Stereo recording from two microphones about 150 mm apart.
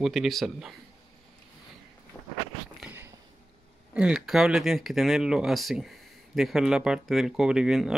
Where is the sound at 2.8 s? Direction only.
15° right (ahead or behind).